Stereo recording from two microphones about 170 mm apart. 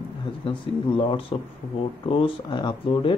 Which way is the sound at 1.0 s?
30° left (ahead or behind).